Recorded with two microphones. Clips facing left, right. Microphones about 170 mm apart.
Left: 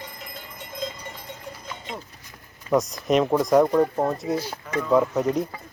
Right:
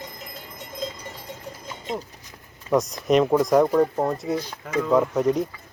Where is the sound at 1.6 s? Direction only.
40° right (ahead or behind).